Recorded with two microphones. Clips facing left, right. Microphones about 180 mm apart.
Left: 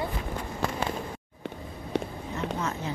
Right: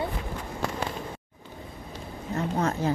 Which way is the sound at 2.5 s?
55° right (ahead or behind).